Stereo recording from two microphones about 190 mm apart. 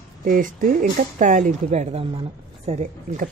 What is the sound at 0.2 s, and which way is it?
Speech, 45° right (ahead or behind).